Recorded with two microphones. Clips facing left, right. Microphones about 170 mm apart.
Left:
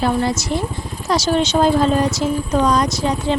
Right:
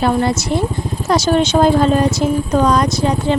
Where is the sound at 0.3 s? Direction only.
60° right (ahead or behind).